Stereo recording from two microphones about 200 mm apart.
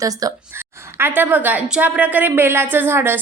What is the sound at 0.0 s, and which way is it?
Speech, 20° right (ahead or behind).